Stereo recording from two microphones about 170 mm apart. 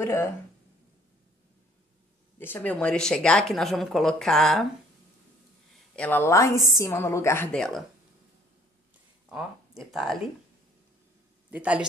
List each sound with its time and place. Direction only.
0.0 s a woman's voice: 15° left (ahead or behind)
2.3 s speech: 10° left (ahead or behind)
5.9 s a woman's voice: 10° left (ahead or behind)
7.5 s speech: 5° left (ahead or behind)
9.3 s speech: centre (ahead or behind)
11.5 s speech: 10° right (ahead or behind)